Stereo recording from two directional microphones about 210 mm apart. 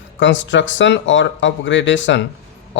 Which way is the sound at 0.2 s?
60° left (ahead or behind).